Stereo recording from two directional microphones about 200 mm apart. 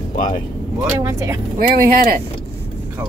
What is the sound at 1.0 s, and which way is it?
Speech, 15° right (ahead or behind).